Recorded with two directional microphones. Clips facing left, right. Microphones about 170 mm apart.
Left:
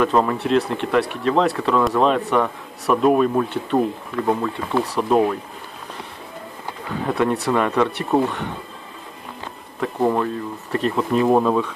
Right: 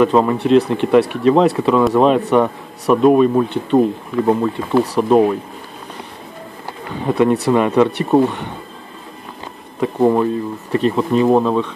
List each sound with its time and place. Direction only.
0.0 s speech: 5° right (ahead or behind)
3.7 s speech: 15° right (ahead or behind)
4.7 s speech: centre (ahead or behind)
7.1 s speech: 5° right (ahead or behind)
9.9 s speech: 15° right (ahead or behind)
10.7 s speech: centre (ahead or behind)